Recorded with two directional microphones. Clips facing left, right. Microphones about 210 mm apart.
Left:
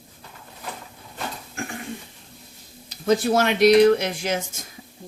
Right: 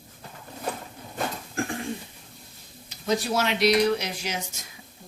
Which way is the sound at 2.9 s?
50° left (ahead or behind).